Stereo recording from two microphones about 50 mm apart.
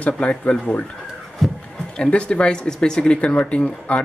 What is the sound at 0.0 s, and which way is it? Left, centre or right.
Speech, left.